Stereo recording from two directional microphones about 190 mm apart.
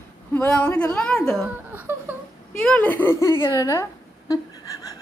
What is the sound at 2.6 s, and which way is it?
A woman's voice, 5° left (ahead or behind).